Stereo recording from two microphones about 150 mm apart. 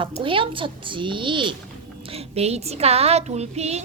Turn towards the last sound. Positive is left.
turn(degrees=-45)  # may be behind; listen again after turning